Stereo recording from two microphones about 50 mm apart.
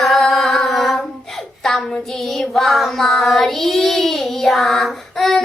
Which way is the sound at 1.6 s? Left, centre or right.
Centre.